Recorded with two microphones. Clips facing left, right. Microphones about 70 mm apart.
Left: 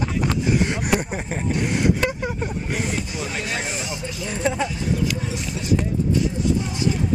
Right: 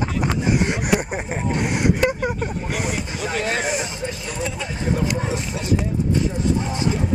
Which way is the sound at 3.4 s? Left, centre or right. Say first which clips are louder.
Right 4 dB; right.